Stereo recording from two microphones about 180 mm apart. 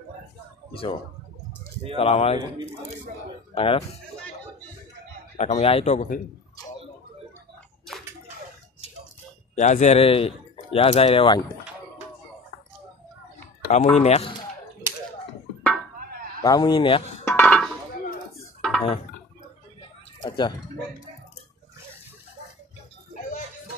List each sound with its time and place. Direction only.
2.0 s speech: 30° left (ahead or behind)
5.4 s speech: 35° left (ahead or behind)
9.6 s speech: 40° left (ahead or behind)
13.7 s speech: 40° left (ahead or behind)
16.4 s speech: 25° left (ahead or behind)
17.2 s a sound: 10° left (ahead or behind)
20.2 s speech: 25° left (ahead or behind)